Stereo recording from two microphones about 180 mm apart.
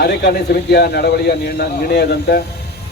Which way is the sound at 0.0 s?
65° left (ahead or behind).